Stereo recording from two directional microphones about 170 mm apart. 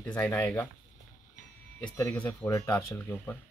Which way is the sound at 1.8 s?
10° left (ahead or behind).